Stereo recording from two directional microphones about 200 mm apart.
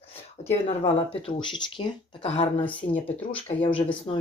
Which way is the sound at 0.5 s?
30° left (ahead or behind).